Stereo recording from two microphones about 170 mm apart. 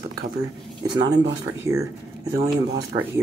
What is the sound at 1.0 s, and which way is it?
Speech, 25° right (ahead or behind).